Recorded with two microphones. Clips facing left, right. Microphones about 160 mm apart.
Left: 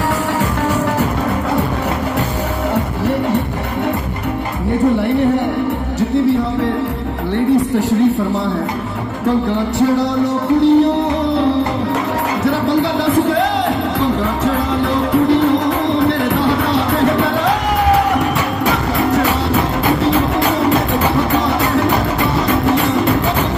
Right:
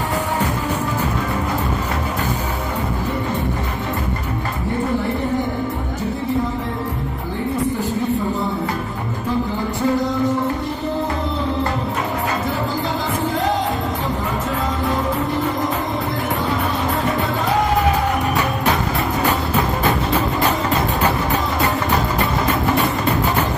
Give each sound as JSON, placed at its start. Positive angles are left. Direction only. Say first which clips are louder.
{"t": 9.5, "sound": "music", "louder": "left 5 dB", "side_deg": 75}
{"t": 12.4, "sound": "music", "louder": "left 8 dB", "side_deg": 75}
{"t": 15.2, "sound": "music", "louder": "left 8 dB", "side_deg": 80}